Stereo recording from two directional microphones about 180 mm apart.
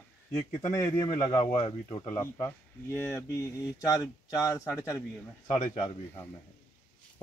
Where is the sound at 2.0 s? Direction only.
15° left (ahead or behind).